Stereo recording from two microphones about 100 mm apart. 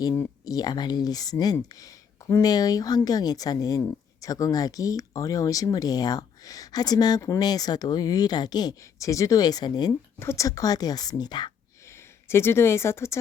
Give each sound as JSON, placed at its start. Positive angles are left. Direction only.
{"t": 0.4, "sound": "speech", "side_deg": 40}
{"t": 8.8, "sound": "speech", "side_deg": 30}
{"t": 10.2, "sound": "speech", "side_deg": 30}
{"t": 11.9, "sound": "speech", "side_deg": 25}